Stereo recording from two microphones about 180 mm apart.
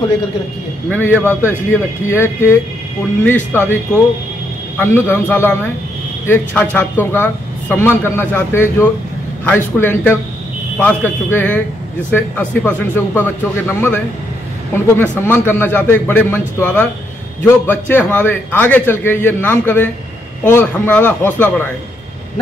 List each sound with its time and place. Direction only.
0.8 s a man's voice: 10° left (ahead or behind)
3.5 s a man's voice: 10° left (ahead or behind)
4.7 s a man's voice: 10° left (ahead or behind)
15.0 s a man's voice: 10° left (ahead or behind)